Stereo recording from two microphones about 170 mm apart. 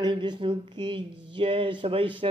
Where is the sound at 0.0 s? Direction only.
25° right (ahead or behind).